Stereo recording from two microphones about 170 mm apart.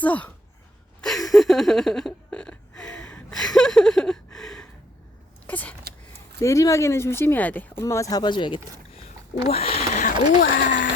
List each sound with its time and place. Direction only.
0.0 s speech: 10° left (ahead or behind)
1.0 s a sound: centre (ahead or behind)
5.5 s speech: 10° left (ahead or behind); by 10.9 s 50° left (ahead or behind)